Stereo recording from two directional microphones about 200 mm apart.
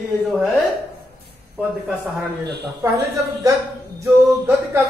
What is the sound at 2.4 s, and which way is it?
Speech, 55° right (ahead or behind).